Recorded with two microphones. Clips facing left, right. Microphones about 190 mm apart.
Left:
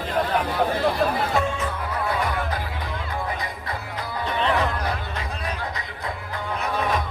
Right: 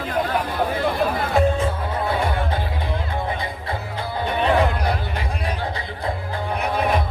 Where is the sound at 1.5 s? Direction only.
30° right (ahead or behind).